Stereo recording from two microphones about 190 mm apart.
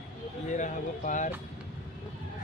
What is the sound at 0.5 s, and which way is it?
Speech, 40° left (ahead or behind).